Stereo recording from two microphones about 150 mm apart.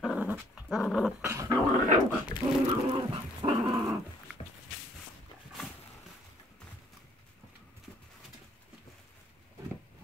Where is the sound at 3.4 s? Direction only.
35° right (ahead or behind).